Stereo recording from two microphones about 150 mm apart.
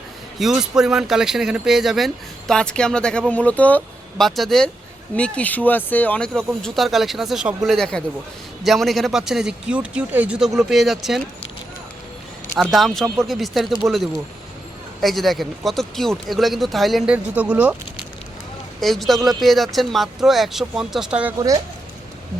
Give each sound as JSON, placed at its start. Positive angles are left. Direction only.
{"t": 0.3, "sound": "speech", "side_deg": -5}
{"t": 12.7, "sound": "speech", "side_deg": 0}
{"t": 21.3, "sound": "speech", "side_deg": -25}